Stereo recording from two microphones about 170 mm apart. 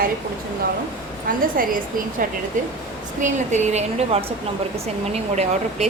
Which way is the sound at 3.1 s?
45° right (ahead or behind).